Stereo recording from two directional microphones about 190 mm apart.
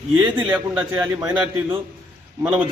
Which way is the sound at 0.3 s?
5° right (ahead or behind).